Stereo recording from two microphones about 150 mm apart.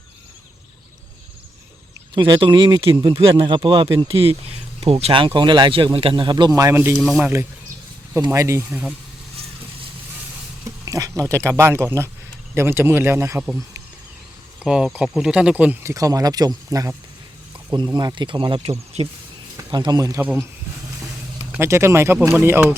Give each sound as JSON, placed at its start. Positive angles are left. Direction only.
{"t": 2.1, "sound": "speech", "side_deg": -30}
{"t": 6.9, "sound": "speech", "side_deg": 0}
{"t": 8.1, "sound": "speech", "side_deg": -20}
{"t": 8.7, "sound": "speech", "side_deg": -5}
{"t": 10.8, "sound": "a sound", "side_deg": -20}
{"t": 11.2, "sound": "speech", "side_deg": -20}
{"t": 18.9, "sound": "speech", "side_deg": -45}
{"t": 19.5, "sound": "speech", "side_deg": -30}
{"t": 21.5, "sound": "speech", "side_deg": -20}